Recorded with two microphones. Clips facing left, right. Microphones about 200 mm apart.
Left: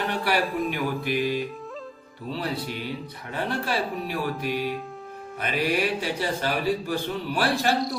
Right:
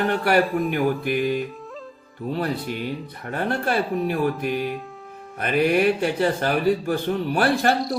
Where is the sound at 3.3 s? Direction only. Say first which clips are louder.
Right 4 dB; 50° right (ahead or behind).